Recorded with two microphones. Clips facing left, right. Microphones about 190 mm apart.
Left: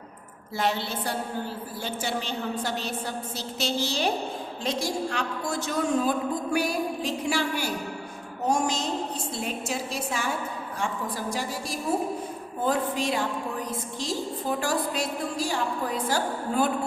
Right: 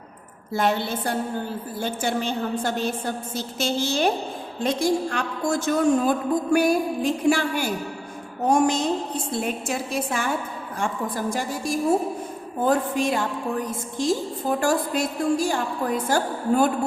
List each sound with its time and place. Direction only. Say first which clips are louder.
0.5 s a man's voice: right 5 dB; 50° right (ahead or behind)